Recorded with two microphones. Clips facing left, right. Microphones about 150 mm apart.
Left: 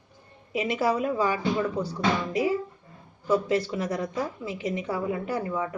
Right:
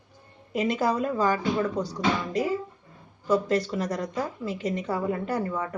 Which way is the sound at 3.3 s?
5° left (ahead or behind).